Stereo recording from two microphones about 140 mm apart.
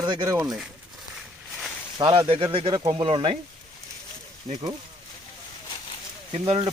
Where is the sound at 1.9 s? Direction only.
30° right (ahead or behind).